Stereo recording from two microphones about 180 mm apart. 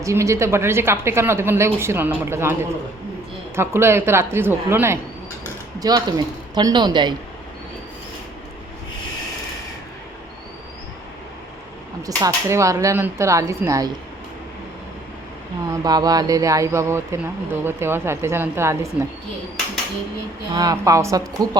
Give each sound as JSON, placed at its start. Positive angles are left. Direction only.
{"t": 0.0, "sound": "speech", "side_deg": -15}
{"t": 12.0, "sound": "speech", "side_deg": -20}
{"t": 15.7, "sound": "speech", "side_deg": -20}
{"t": 20.5, "sound": "speech", "side_deg": -20}